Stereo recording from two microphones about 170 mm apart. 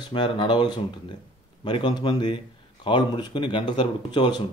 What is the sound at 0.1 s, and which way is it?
Speech, 30° left (ahead or behind).